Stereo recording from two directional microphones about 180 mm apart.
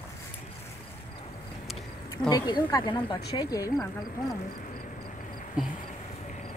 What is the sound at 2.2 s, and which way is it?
Speech, 25° left (ahead or behind).